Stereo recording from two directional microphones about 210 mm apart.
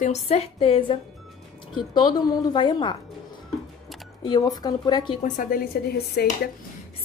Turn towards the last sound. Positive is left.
turn(degrees=50)  # may be behind; listen again after turning